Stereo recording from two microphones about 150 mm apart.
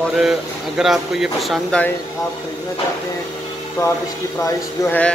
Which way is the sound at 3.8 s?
20° left (ahead or behind).